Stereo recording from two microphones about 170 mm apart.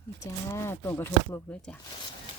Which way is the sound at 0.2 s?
15° left (ahead or behind).